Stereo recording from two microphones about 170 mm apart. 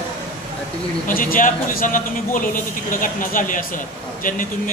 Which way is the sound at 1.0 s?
55° left (ahead or behind).